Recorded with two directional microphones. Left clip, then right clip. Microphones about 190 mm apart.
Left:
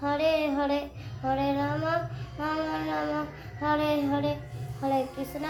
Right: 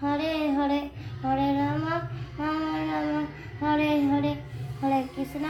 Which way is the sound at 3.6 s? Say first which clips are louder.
Right 2 dB; 5° left (ahead or behind).